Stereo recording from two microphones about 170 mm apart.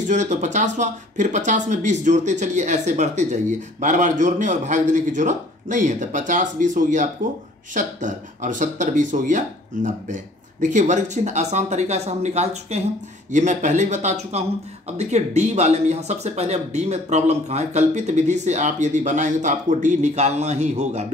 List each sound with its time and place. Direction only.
0.0 s speech: 45° right (ahead or behind)